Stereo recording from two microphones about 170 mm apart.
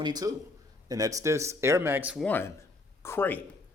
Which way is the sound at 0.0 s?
25° right (ahead or behind).